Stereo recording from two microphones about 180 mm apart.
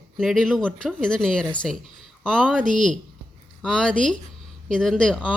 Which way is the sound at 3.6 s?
5° left (ahead or behind).